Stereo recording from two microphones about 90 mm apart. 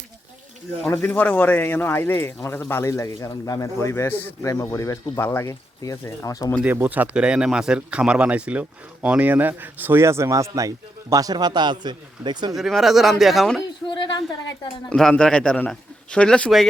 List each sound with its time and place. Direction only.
0.9 s speech: 20° left (ahead or behind)
5.8 s speech: 40° left (ahead or behind)
6.6 s speech: 20° right (ahead or behind); by 12.5 s 55° right (ahead or behind)
12.5 s speech: 5° right (ahead or behind)
13.8 s speech: 60° left (ahead or behind)
14.8 s a man's voice: 10° left (ahead or behind)